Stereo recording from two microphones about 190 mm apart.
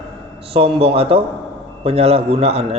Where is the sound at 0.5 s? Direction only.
30° right (ahead or behind).